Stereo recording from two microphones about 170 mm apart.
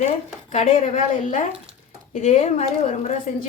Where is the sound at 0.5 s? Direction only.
40° left (ahead or behind).